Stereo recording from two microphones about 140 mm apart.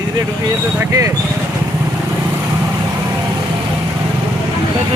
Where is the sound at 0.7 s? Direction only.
25° right (ahead or behind).